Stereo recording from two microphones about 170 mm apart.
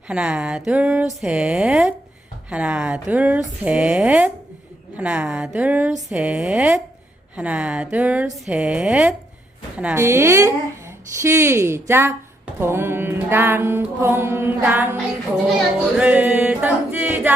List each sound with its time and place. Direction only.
0.1 s speech: 5° right (ahead or behind)
2.5 s music: 5° right (ahead or behind)
9.7 s a woman's voice: 10° right (ahead or behind)
12.5 s music: 15° right (ahead or behind)